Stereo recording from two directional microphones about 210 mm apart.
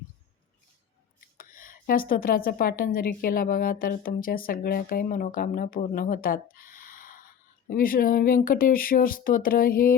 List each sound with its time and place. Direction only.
1.4 s speech: 40° left (ahead or behind)